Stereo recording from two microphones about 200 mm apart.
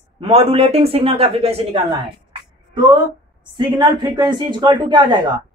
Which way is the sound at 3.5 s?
25° right (ahead or behind).